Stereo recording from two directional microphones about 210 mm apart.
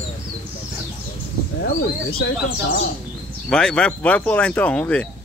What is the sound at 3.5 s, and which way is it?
Speech, 5° left (ahead or behind).